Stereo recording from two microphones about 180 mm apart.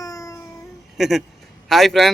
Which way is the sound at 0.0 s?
20° left (ahead or behind).